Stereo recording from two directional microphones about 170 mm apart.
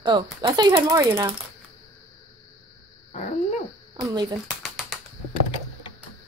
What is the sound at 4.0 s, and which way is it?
Speech, 25° right (ahead or behind).